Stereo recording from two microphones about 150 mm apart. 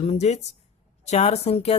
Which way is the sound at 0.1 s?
45° left (ahead or behind).